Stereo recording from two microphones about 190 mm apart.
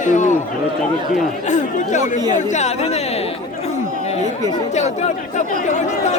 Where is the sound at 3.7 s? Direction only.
35° left (ahead or behind).